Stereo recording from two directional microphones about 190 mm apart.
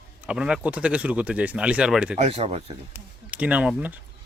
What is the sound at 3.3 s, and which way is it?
Speech, 5° right (ahead or behind).